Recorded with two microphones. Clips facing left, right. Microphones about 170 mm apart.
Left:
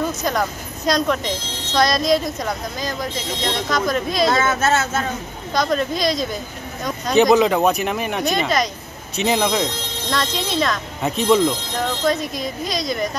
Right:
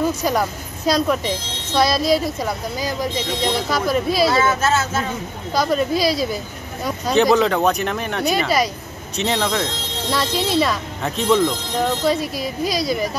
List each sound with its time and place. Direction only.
0.2 s speech: 10° right (ahead or behind)
4.3 s speech: 50° left (ahead or behind)
5.5 s speech: 5° right (ahead or behind)
7.3 s speech: 5° left (ahead or behind)
8.2 s speech: 10° right (ahead or behind)
9.1 s speech: 10° left (ahead or behind)
10.0 s speech: 10° right (ahead or behind)
11.0 s speech: 5° left (ahead or behind)
12.0 s speech: 5° right (ahead or behind)